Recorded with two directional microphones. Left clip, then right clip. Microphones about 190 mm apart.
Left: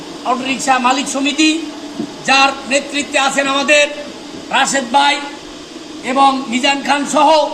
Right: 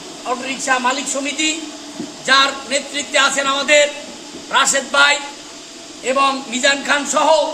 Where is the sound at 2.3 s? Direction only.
15° right (ahead or behind).